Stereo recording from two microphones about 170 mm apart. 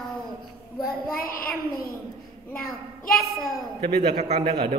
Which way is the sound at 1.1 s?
60° left (ahead or behind).